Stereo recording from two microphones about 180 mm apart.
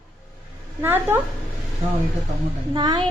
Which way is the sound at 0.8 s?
10° right (ahead or behind).